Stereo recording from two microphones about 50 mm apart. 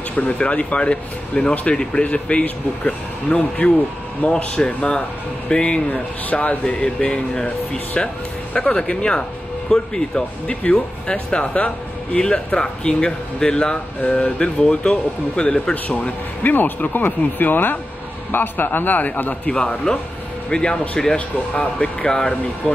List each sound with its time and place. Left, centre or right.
0.1 s speech: left; by 10.6 s centre
10.6 s speech: left
16.4 s speech: left
19.5 s speech: centre